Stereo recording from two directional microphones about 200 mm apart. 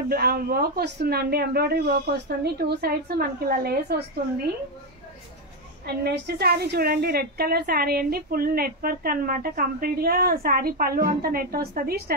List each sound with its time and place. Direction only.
0.1 s a woman's voice: 50° right (ahead or behind)
5.9 s a woman's voice: 55° right (ahead or behind)